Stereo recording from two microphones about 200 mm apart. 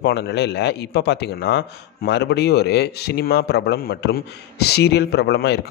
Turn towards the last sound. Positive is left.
turn(degrees=55)  # may be behind; listen again after turning